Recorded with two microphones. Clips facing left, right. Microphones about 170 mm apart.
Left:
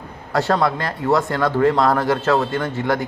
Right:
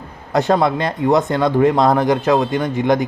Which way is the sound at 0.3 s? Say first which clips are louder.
Right 3 dB; 20° right (ahead or behind).